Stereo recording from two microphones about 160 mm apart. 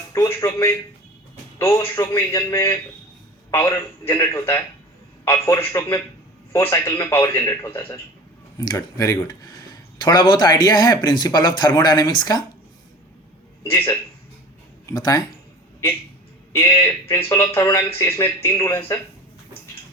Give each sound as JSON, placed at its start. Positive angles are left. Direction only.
{"t": 0.1, "sound": "speech", "side_deg": 15}
{"t": 13.7, "sound": "speech", "side_deg": 15}
{"t": 16.5, "sound": "speech", "side_deg": 20}